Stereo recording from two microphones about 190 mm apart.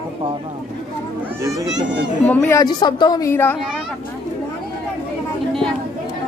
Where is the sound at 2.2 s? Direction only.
10° left (ahead or behind).